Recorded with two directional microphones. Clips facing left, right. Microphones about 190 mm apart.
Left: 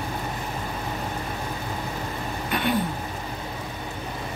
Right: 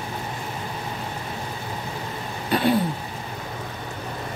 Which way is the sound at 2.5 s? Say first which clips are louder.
Right 6 dB; 30° right (ahead or behind).